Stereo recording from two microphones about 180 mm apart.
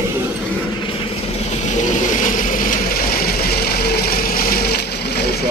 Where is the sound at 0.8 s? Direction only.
30° left (ahead or behind).